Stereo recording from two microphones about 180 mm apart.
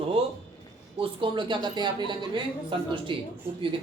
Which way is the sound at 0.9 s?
30° right (ahead or behind).